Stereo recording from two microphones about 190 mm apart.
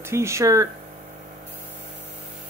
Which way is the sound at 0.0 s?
15° right (ahead or behind).